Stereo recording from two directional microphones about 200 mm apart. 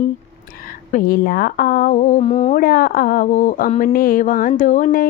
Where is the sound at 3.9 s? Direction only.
45° left (ahead or behind).